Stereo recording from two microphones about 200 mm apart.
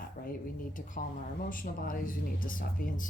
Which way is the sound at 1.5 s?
45° left (ahead or behind).